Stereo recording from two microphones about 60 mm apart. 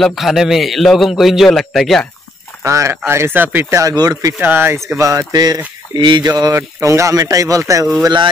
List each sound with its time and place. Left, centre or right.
0.0 s a man's voice: centre
2.6 s speech: right
3.1 s speech: right
3.7 s speech: right
4.4 s speech: right
6.5 s speech: right